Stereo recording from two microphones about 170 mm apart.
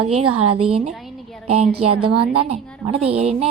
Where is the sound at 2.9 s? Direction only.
35° right (ahead or behind).